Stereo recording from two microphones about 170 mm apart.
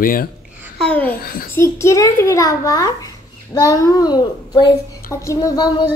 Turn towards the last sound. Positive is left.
turn(degrees=25)  # may be behind; listen again after turning